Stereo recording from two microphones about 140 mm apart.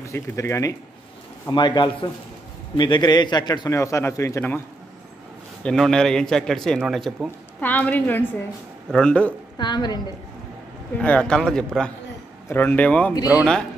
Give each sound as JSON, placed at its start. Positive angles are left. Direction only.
{"t": 0.0, "sound": "a man's voice", "side_deg": 20}
{"t": 1.5, "sound": "a man's voice", "side_deg": 35}
{"t": 5.6, "sound": "a man's voice", "side_deg": 5}
{"t": 7.2, "sound": "a woman's voice", "side_deg": 10}
{"t": 9.6, "sound": "speech", "side_deg": 30}
{"t": 11.0, "sound": "a man's voice", "side_deg": 10}